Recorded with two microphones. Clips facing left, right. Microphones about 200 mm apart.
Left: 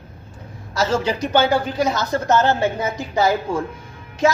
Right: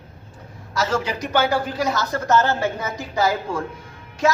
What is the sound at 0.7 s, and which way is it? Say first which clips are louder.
A man's voice: left 3 dB; 30° left (ahead or behind).